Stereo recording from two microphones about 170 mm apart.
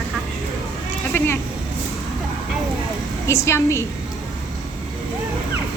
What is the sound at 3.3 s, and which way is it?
Speech, 15° left (ahead or behind).